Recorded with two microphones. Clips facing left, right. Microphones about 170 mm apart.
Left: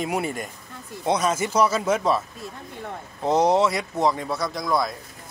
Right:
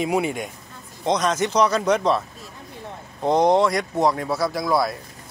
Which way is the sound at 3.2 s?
5° left (ahead or behind).